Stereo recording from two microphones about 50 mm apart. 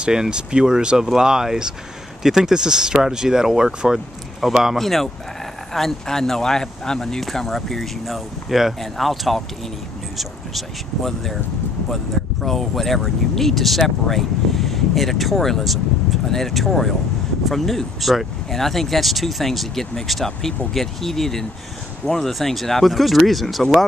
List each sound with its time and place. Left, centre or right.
0.0 s speech: centre
12.4 s speech: centre